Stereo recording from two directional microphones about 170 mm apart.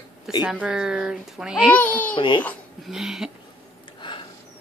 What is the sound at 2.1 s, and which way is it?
Speech, 30° left (ahead or behind).